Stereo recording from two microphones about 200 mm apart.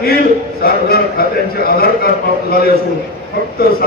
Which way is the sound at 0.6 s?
50° left (ahead or behind).